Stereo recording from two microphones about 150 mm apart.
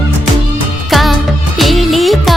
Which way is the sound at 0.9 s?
Centre (ahead or behind).